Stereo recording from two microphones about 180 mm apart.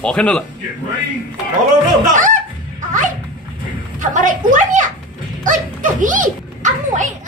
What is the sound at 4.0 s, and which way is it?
Speech, 45° right (ahead or behind).